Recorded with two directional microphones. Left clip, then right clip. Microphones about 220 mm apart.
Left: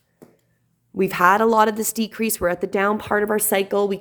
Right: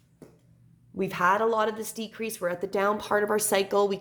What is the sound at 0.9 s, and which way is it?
Speech, 45° left (ahead or behind).